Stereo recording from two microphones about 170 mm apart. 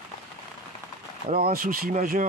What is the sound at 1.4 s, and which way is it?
Speech, 60° right (ahead or behind).